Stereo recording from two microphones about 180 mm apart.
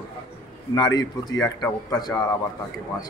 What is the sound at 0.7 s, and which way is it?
A man's voice, 20° left (ahead or behind).